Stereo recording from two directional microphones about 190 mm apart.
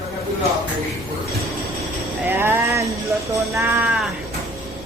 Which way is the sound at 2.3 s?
10° right (ahead or behind).